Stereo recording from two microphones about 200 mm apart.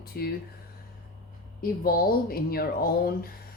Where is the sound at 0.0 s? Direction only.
50° left (ahead or behind).